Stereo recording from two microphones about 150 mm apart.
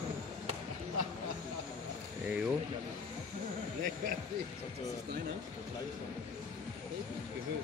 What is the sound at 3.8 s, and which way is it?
Speech, 60° right (ahead or behind).